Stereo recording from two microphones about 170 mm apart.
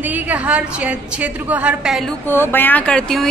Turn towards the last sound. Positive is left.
turn(degrees=5)  # may be behind; listen again after turning